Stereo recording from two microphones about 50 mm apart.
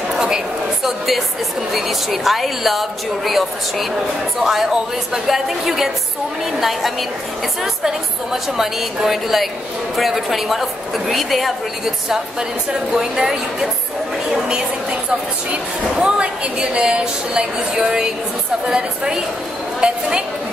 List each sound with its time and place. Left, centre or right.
0.8 s a woman's voice: centre
12.9 s a woman's voice: centre
14.3 s a sound: centre
15.5 s a woman's voice: right